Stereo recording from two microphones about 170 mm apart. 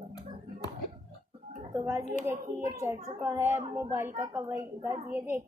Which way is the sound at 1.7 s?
15° right (ahead or behind).